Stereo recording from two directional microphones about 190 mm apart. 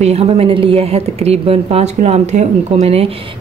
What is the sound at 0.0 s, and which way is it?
A woman's voice, 35° right (ahead or behind).